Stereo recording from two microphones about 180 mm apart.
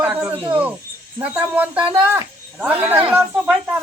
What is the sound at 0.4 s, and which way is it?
Cricket, 10° right (ahead or behind).